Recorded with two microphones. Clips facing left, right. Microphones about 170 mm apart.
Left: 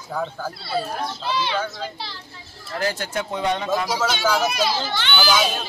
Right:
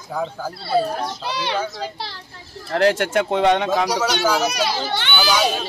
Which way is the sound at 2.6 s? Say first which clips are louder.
Right 8 dB; 70° right (ahead or behind).